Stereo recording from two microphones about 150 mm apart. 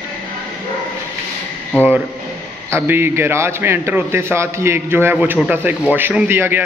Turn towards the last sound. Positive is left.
turn(degrees=-15)  # may be behind; listen again after turning